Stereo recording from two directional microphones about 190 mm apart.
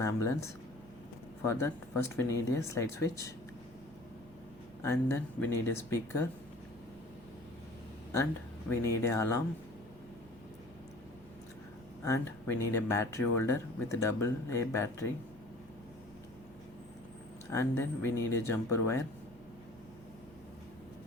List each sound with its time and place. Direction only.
0.0 s speech: 15° left (ahead or behind)
1.5 s speech: 15° left (ahead or behind)
4.8 s speech: 15° left (ahead or behind)
8.7 s speech: 15° left (ahead or behind)
12.0 s speech: 15° left (ahead or behind)
17.5 s speech: 15° left (ahead or behind)